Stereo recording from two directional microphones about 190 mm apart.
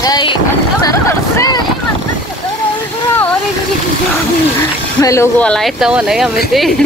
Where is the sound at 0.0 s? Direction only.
25° left (ahead or behind).